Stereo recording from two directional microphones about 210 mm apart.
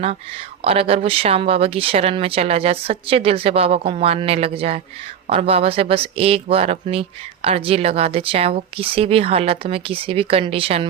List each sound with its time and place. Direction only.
0.0 s speech: 30° right (ahead or behind)